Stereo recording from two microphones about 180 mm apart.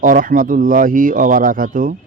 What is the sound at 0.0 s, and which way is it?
Speech, 50° right (ahead or behind).